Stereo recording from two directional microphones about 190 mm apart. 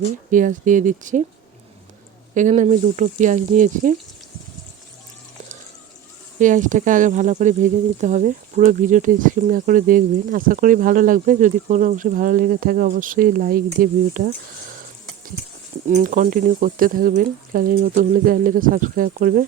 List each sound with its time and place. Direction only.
0.3 s speech: 40° right (ahead or behind)
2.3 s speech: 40° right (ahead or behind)
6.4 s speech: 40° right (ahead or behind)
15.9 s speech: 45° right (ahead or behind)